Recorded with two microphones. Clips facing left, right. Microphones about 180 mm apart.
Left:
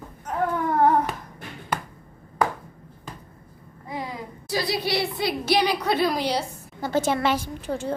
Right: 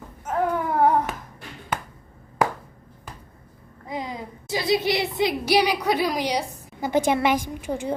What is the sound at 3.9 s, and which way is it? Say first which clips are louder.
A woman's voice: right 1 dB; 20° right (ahead or behind).